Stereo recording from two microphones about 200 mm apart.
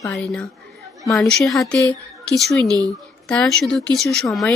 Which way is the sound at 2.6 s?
20° right (ahead or behind).